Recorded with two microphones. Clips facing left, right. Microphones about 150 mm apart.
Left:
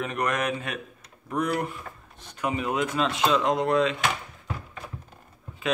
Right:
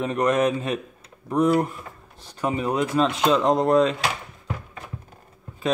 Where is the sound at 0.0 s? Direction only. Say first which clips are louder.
Right 7 dB; 30° right (ahead or behind).